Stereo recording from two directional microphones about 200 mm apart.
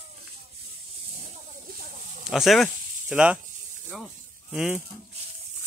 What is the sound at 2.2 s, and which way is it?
Speech, centre (ahead or behind).